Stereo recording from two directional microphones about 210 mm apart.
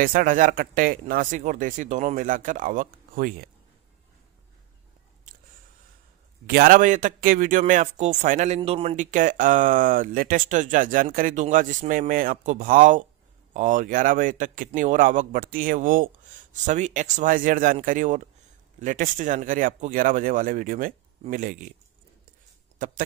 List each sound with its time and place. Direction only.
0.0 s speech: 40° right (ahead or behind)
6.4 s speech: 45° right (ahead or behind)
22.8 s speech: 40° right (ahead or behind)